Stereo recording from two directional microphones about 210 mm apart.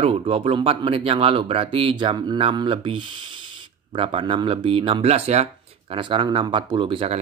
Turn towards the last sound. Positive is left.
turn(degrees=-25)  # may be behind; listen again after turning